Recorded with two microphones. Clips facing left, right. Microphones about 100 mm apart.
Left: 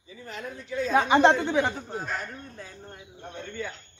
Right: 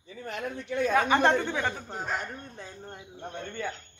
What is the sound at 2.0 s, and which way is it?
Speech, 20° right (ahead or behind).